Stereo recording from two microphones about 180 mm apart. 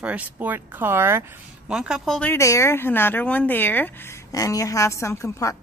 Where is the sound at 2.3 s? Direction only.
15° left (ahead or behind).